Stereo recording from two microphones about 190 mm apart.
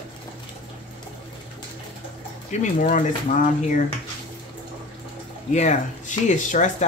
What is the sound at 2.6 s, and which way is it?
Speech, 40° left (ahead or behind).